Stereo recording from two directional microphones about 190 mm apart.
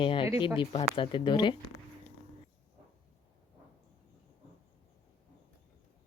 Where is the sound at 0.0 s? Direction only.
30° left (ahead or behind).